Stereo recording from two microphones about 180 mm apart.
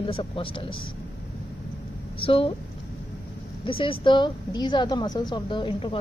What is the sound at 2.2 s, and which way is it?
Speech, 30° left (ahead or behind).